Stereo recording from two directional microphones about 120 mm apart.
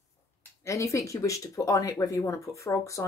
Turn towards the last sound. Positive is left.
turn(degrees=25)  # may be behind; listen again after turning